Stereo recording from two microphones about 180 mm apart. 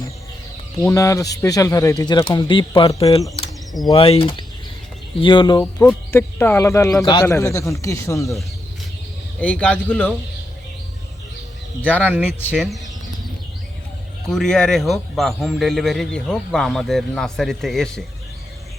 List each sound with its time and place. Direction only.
0.8 s speech: 15° left (ahead or behind)
6.1 s speech: 10° left (ahead or behind)
9.4 s speech: 5° left (ahead or behind)
11.9 s speech: 10° right (ahead or behind)
14.3 s a man's voice: 5° left (ahead or behind)